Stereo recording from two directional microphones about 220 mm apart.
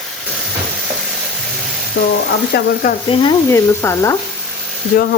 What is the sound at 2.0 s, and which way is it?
Speech, 55° left (ahead or behind).